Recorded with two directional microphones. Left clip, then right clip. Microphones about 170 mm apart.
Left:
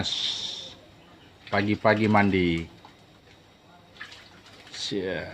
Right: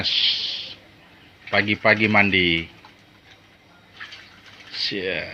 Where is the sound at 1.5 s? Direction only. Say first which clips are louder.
Right 5 dB; 15° left (ahead or behind).